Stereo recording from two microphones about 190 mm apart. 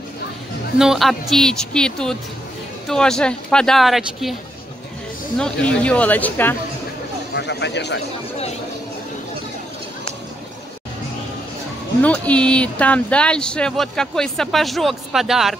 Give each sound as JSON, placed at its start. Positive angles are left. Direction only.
{"t": 0.7, "sound": "speech", "side_deg": 0}
{"t": 5.4, "sound": "speech", "side_deg": 5}
{"t": 7.3, "sound": "speech", "side_deg": 65}
{"t": 12.0, "sound": "speech", "side_deg": 5}